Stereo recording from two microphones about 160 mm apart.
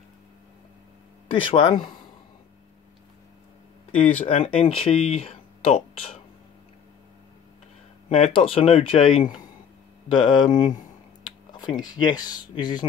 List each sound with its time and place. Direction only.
1.4 s speech: 30° left (ahead or behind)
3.9 s speech: 50° left (ahead or behind)
4.4 s speech: 35° left (ahead or behind)
8.1 s speech: 40° left (ahead or behind)